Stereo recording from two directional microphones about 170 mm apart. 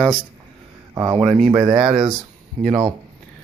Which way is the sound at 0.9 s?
20° right (ahead or behind).